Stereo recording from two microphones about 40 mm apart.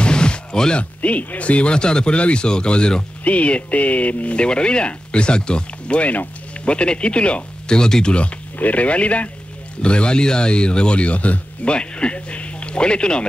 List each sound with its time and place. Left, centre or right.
0.0 s music: left
1.0 s speech: left; by 8.1 s centre
8.5 s speech: left
11.7 s speech: left